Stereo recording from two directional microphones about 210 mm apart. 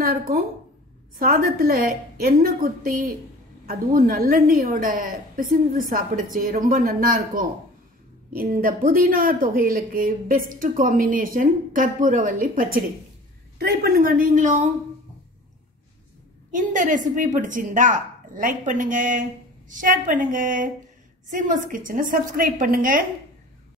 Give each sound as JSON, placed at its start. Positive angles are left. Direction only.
{"t": 1.2, "sound": "a woman's voice", "side_deg": -45}
{"t": 16.5, "sound": "speech", "side_deg": -40}